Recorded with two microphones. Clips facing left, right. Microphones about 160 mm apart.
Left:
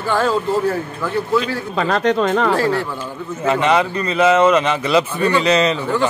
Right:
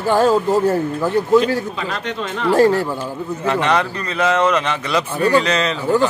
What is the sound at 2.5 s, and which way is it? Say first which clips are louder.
Speech: right 4 dB; 45° right (ahead or behind).